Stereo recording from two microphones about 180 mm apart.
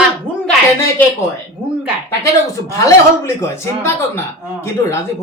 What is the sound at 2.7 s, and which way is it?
Speech, 15° left (ahead or behind).